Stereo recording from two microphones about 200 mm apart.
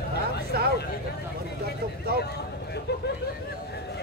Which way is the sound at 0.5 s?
50° right (ahead or behind).